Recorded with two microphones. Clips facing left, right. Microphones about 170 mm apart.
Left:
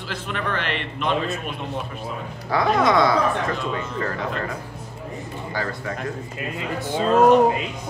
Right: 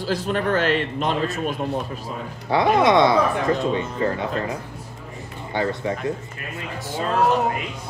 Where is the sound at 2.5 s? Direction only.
25° right (ahead or behind).